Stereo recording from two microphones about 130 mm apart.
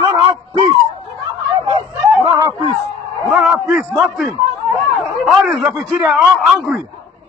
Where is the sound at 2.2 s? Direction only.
30° right (ahead or behind).